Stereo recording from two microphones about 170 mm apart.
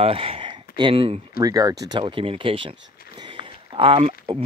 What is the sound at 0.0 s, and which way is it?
Speech, 35° right (ahead or behind).